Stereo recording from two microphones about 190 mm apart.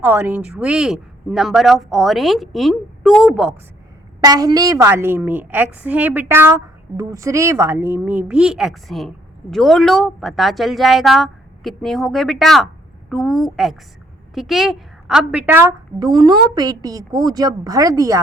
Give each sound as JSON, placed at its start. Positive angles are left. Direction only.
{"t": 0.0, "sound": "speech", "side_deg": -10}
{"t": 4.2, "sound": "a woman's voice", "side_deg": -20}